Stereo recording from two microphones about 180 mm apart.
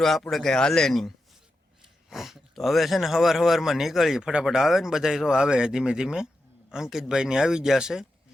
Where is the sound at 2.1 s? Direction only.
Centre (ahead or behind).